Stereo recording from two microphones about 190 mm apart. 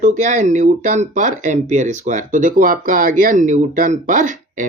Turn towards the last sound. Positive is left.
turn(degrees=-40)  # may be behind; listen again after turning